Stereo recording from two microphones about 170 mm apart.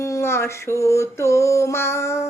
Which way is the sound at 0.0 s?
15° left (ahead or behind).